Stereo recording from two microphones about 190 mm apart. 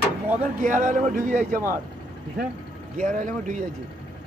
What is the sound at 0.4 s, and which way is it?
A man's voice, 40° right (ahead or behind).